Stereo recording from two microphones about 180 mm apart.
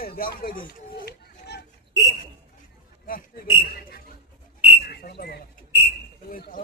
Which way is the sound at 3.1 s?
50° left (ahead or behind).